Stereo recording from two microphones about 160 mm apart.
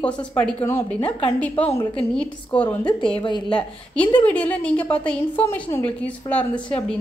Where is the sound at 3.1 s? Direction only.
30° left (ahead or behind).